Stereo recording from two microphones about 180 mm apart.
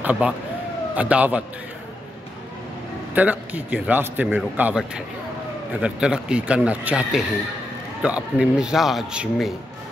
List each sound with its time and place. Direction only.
0.0 s a man's voice: 10° right (ahead or behind)
3.2 s a man's voice: 10° right (ahead or behind)